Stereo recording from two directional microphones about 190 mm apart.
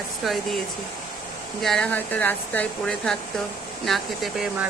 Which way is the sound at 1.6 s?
5° left (ahead or behind).